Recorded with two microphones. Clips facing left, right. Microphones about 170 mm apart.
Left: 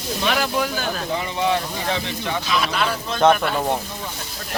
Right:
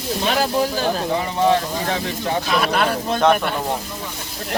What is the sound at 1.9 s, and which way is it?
Speech, 45° right (ahead or behind).